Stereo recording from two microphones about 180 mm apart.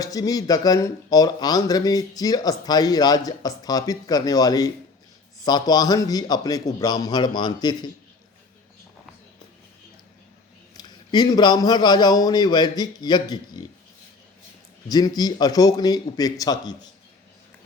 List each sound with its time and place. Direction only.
0.0 s speech: 20° left (ahead or behind)
10.8 s speech: 25° left (ahead or behind)
14.8 s speech: 20° left (ahead or behind)